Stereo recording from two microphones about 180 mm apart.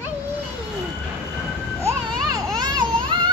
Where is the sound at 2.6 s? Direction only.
25° right (ahead or behind).